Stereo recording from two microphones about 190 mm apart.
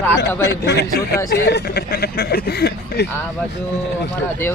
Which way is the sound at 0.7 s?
60° left (ahead or behind).